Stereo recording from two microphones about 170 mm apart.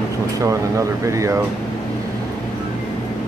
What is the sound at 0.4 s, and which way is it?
Speech, 20° right (ahead or behind).